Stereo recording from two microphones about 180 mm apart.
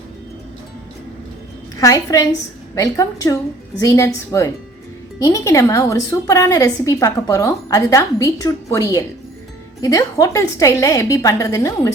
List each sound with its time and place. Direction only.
1.8 s a woman's voice: 20° left (ahead or behind)